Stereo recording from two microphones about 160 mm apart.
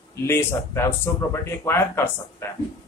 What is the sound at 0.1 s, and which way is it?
Speech, 15° left (ahead or behind).